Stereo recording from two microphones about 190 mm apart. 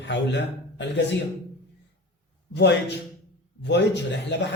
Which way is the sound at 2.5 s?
65° left (ahead or behind).